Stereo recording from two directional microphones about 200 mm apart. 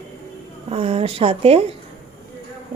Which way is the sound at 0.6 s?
30° right (ahead or behind).